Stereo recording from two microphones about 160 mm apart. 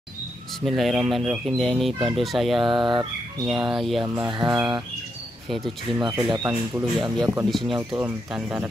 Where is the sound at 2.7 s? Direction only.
30° right (ahead or behind).